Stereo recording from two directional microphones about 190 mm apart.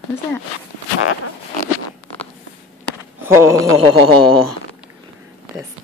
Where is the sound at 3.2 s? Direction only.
15° right (ahead or behind).